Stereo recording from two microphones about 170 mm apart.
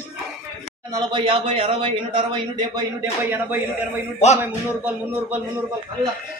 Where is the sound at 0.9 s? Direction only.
30° right (ahead or behind).